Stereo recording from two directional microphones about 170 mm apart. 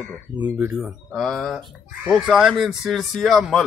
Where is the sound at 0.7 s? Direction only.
Centre (ahead or behind).